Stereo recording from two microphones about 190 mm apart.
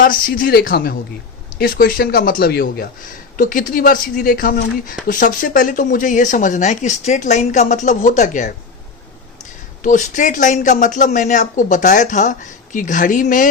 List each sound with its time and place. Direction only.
0.0 s speech: 45° left (ahead or behind)
9.8 s speech: 40° left (ahead or behind)